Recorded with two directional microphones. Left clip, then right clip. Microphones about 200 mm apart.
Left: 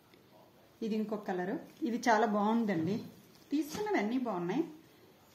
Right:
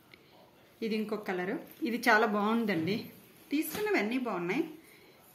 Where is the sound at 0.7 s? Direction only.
10° left (ahead or behind).